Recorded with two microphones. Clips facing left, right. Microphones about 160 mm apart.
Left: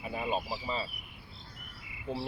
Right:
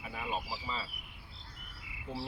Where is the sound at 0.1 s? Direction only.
25° left (ahead or behind).